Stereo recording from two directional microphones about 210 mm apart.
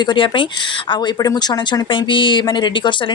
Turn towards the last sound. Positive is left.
turn(degrees=20)  # may be behind; listen again after turning